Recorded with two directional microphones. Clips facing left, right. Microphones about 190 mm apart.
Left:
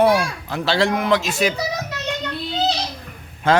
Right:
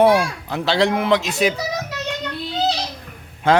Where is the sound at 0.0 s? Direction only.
25° right (ahead or behind).